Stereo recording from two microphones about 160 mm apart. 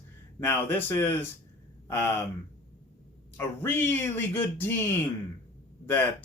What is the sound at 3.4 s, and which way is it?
Speech, 10° left (ahead or behind).